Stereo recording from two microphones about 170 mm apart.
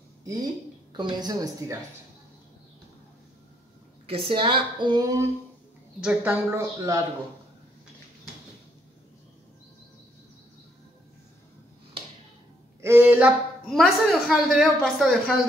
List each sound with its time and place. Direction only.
0.9 s speech: 25° right (ahead or behind)
4.1 s speech: 30° right (ahead or behind)
5.9 s speech: 5° right (ahead or behind)
12.8 s speech: 10° right (ahead or behind)
13.7 s a woman's voice: centre (ahead or behind)